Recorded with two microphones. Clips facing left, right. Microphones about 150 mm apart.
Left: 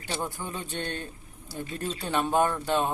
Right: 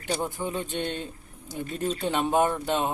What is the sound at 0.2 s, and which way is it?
Speech, 20° right (ahead or behind).